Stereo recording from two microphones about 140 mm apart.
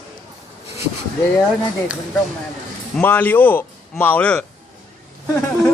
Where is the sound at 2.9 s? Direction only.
15° left (ahead or behind).